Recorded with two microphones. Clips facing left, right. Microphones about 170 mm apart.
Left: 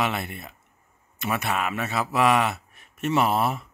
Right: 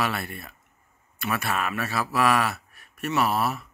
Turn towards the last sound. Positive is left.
turn(degrees=25)  # may be behind; listen again after turning